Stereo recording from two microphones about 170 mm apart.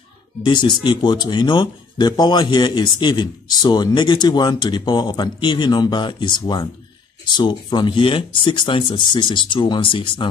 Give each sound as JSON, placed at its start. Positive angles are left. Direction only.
{"t": 0.4, "sound": "a man's voice", "side_deg": 30}